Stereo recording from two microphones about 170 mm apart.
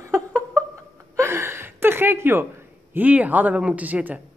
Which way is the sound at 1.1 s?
15° right (ahead or behind).